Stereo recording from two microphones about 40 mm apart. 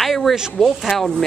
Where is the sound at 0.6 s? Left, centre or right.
Centre.